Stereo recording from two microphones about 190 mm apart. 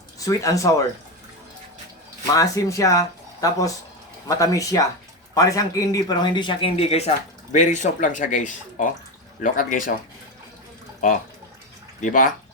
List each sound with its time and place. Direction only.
0.2 s speech: 15° left (ahead or behind)
2.3 s speech: 15° left (ahead or behind); by 9.9 s 45° left (ahead or behind)
11.9 s speech: 45° left (ahead or behind)